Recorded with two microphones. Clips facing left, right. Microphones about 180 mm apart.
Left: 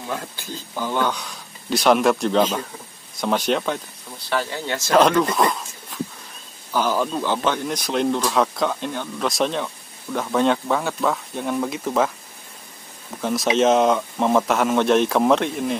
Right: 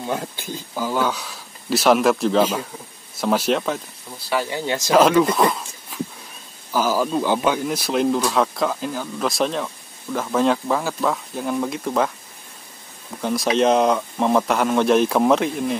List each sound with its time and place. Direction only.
0.0 s speech: 20° right (ahead or behind)
0.7 s speech: 5° right (ahead or behind)
4.3 s speech: 15° right (ahead or behind)
4.9 s speech: 5° right (ahead or behind)
6.7 s speech: 5° right (ahead or behind)
13.2 s speech: centre (ahead or behind)